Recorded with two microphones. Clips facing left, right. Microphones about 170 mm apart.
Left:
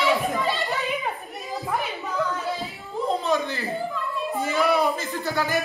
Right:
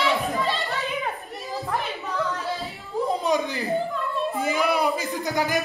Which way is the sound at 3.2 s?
15° right (ahead or behind).